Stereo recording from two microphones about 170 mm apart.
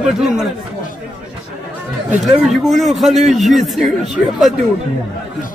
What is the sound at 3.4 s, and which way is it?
Speech, centre (ahead or behind).